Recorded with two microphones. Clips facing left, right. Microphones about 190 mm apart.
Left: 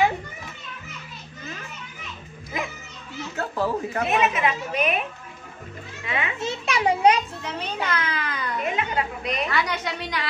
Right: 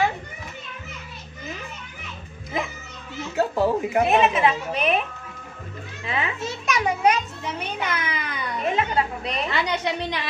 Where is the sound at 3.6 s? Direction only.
20° right (ahead or behind).